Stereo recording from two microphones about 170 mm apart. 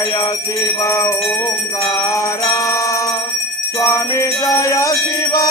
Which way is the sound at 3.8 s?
15° left (ahead or behind).